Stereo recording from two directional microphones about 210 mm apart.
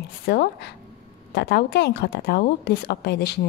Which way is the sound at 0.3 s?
50° left (ahead or behind).